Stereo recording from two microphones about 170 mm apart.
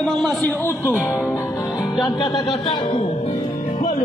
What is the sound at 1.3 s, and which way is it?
Music, 15° left (ahead or behind).